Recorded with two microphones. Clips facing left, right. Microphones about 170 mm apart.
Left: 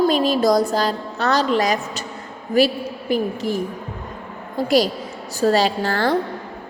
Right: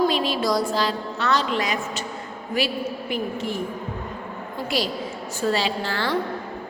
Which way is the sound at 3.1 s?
40° left (ahead or behind).